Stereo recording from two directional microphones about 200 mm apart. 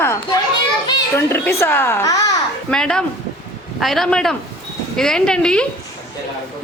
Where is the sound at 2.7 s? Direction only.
5° left (ahead or behind).